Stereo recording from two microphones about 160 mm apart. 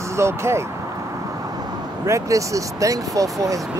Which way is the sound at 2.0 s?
20° right (ahead or behind).